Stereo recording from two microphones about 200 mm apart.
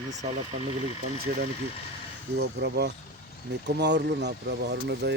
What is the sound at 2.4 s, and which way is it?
Speech, 55° right (ahead or behind).